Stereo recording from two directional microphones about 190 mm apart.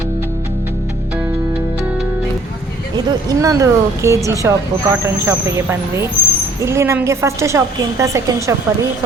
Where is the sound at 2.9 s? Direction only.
20° right (ahead or behind).